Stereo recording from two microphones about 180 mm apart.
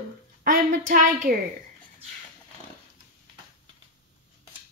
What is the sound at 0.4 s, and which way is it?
Speech, 50° right (ahead or behind).